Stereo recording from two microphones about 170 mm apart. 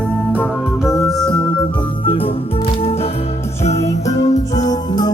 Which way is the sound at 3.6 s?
40° left (ahead or behind).